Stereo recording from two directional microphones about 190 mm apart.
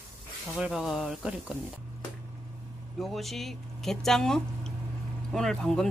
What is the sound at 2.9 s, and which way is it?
Speech, centre (ahead or behind).